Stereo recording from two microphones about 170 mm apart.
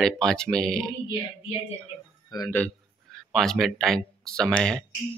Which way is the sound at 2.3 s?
25° left (ahead or behind).